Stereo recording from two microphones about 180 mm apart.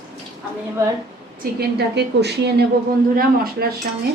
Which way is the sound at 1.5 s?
65° right (ahead or behind).